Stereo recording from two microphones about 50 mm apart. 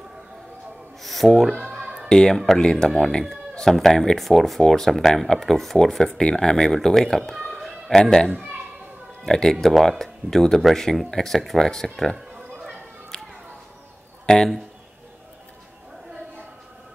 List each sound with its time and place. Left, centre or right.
1.0 s speech: centre
2.0 s speech: centre
2.3 s speech: centre
13.1 s a sound: centre
14.2 s a man's voice: centre